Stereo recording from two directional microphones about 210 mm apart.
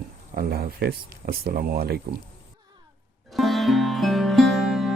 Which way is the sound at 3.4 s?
Centre (ahead or behind).